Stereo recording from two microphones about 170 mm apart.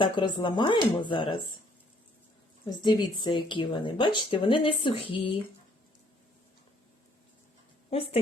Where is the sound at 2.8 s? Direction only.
25° left (ahead or behind).